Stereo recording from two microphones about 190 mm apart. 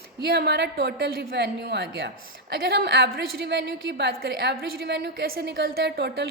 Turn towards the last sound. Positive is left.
turn(degrees=-60)  # may be behind; listen again after turning